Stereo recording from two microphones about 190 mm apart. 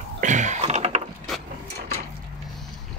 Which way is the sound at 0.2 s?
40° right (ahead or behind).